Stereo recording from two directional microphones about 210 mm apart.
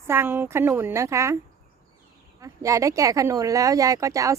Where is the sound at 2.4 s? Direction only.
15° right (ahead or behind).